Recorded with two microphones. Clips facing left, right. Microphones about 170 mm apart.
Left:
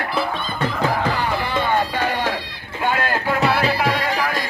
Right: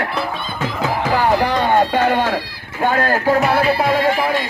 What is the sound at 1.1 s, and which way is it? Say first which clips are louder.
Music: right 6 dB; 60° right (ahead or behind).